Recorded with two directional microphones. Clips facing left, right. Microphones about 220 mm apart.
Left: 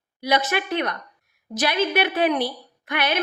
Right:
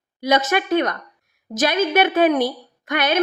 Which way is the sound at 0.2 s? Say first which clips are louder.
Right 4 dB; 50° right (ahead or behind).